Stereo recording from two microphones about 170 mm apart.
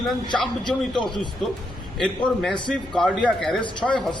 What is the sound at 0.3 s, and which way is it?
Speech, 25° left (ahead or behind).